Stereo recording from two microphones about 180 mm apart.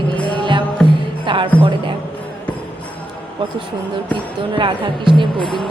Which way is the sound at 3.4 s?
30° right (ahead or behind).